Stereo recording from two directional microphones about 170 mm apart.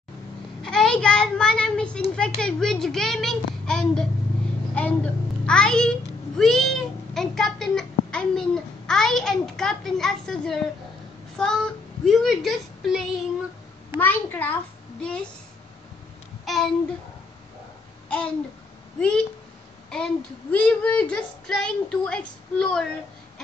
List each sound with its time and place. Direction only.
0.6 s a child's voice: 5° left (ahead or behind)
13.9 s a child's voice: 10° left (ahead or behind)
16.4 s a sound: centre (ahead or behind)
18.0 s babbling: 5° left (ahead or behind)
18.9 s a child's voice: 5° left (ahead or behind)
20.5 s a child's voice: 5° left (ahead or behind)